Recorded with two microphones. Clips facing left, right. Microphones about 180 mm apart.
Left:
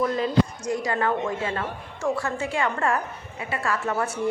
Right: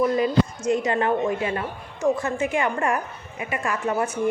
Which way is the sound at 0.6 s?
20° right (ahead or behind).